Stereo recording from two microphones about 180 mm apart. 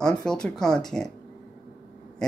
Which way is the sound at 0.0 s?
5° left (ahead or behind).